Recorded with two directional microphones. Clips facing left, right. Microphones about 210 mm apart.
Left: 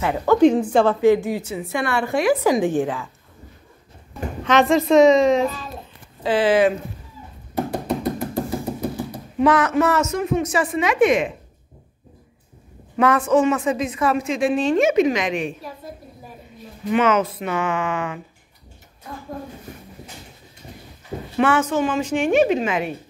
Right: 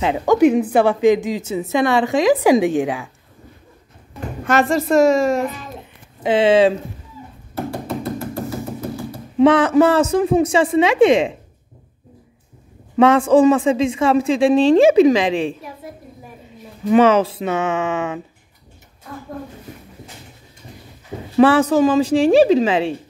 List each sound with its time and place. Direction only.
0.0 s a woman's voice: 20° right (ahead or behind)
2.0 s a woman's voice: 90° right
2.6 s a woman's voice: 70° right (ahead or behind)
4.5 s a woman's voice: 5° right (ahead or behind)
6.2 s a woman's voice: 25° right (ahead or behind)
7.5 s music: 15° left (ahead or behind)
9.4 s a woman's voice: 30° right (ahead or behind)
13.0 s a woman's voice: 30° right (ahead or behind)
16.9 s a woman's voice: 30° right (ahead or behind)
21.4 s a woman's voice: 35° right (ahead or behind)